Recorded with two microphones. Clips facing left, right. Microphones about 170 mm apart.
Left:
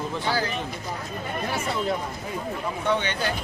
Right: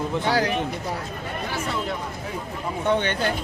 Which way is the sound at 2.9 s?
55° right (ahead or behind).